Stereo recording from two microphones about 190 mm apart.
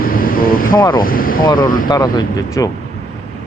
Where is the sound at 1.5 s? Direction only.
25° left (ahead or behind).